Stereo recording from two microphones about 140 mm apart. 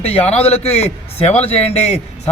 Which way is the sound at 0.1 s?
50° left (ahead or behind).